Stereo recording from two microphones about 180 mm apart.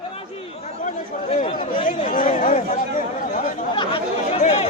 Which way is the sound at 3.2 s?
45° left (ahead or behind).